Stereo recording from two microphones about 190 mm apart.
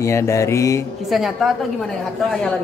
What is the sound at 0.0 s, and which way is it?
Speech, 15° left (ahead or behind).